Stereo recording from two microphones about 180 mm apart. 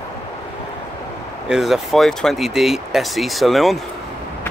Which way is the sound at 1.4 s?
Centre (ahead or behind).